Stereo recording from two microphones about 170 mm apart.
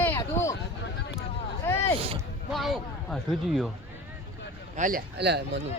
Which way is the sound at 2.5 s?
Centre (ahead or behind).